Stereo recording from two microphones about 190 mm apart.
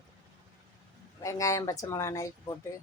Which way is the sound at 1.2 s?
15° left (ahead or behind).